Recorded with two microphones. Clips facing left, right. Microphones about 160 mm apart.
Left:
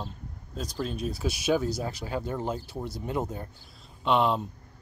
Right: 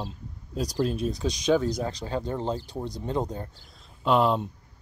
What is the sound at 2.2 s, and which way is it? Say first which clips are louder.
Speech: right 2 dB; 20° right (ahead or behind).